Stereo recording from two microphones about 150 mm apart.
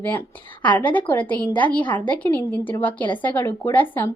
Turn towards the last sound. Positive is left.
turn(degrees=10)  # may be behind; listen again after turning